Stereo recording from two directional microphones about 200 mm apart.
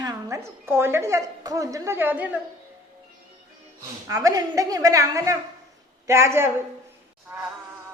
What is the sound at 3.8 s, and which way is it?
A woman's voice, 15° right (ahead or behind).